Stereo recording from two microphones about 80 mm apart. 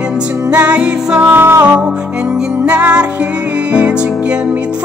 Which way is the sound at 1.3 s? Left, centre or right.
Right.